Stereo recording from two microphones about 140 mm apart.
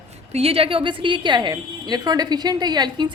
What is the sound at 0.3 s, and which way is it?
A woman's voice, 45° right (ahead or behind).